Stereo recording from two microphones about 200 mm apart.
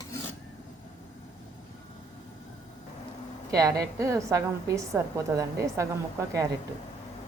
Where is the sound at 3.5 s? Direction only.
15° right (ahead or behind).